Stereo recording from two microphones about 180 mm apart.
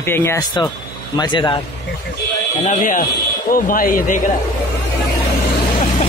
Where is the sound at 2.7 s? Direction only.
45° left (ahead or behind).